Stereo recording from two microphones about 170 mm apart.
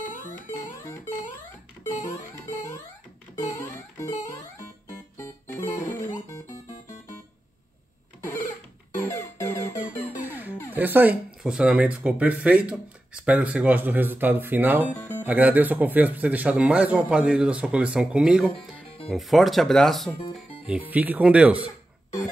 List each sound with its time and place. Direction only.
0.7 s music: 15° left (ahead or behind)
2.0 s music: 15° left (ahead or behind)
5.1 s music: 15° left (ahead or behind)
8.9 s music: 15° left (ahead or behind)
10.1 s music: 10° right (ahead or behind)
10.7 s speech: 10° right (ahead or behind)
15.0 s music: 10° left (ahead or behind)
15.2 s speech: 10° right (ahead or behind)